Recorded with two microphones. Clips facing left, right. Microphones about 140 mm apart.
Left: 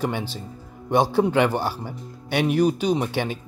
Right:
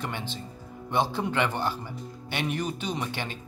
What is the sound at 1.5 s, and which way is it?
Speech, 5° left (ahead or behind).